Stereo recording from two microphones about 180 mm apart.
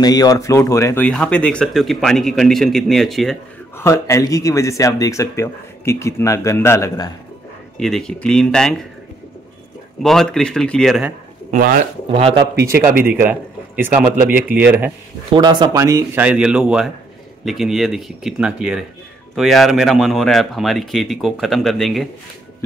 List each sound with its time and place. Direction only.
0.0 s speech: 20° left (ahead or behind); by 3.3 s centre (ahead or behind)
3.7 s speech: 15° left (ahead or behind)
7.7 s speech: centre (ahead or behind)
10.0 s speech: centre (ahead or behind)
11.5 s speech: 50° right (ahead or behind)
12.1 s speech: 30° right (ahead or behind)
13.1 s speech: 10° right (ahead or behind)
15.3 s speech: 25° right (ahead or behind); by 22.0 s centre (ahead or behind)